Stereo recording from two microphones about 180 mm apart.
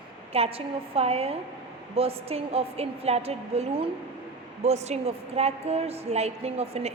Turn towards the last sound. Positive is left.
turn(degrees=-35)  # may be behind; listen again after turning